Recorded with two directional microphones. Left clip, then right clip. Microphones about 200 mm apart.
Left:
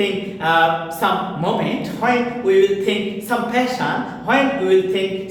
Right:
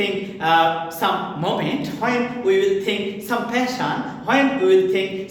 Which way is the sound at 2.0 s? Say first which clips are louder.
Left 3 dB; 25° right (ahead or behind).